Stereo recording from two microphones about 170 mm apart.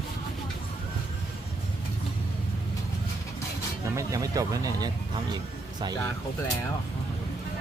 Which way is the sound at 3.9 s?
20° right (ahead or behind).